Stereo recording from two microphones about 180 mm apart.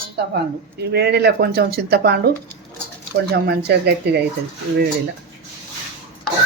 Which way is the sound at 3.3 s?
65° right (ahead or behind).